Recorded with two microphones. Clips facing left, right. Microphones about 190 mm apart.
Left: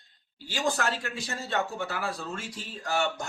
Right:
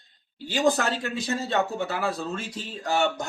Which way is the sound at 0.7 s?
20° right (ahead or behind).